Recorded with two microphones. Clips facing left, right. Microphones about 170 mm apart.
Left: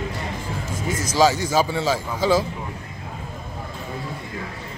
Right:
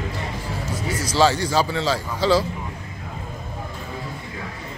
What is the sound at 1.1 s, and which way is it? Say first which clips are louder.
A man's voice: even; 15° left (ahead or behind).